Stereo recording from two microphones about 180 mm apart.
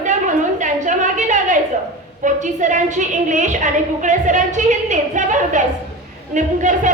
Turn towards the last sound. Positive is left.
turn(degrees=-45)  # may be behind; listen again after turning